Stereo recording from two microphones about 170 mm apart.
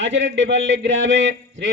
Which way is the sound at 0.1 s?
90° right.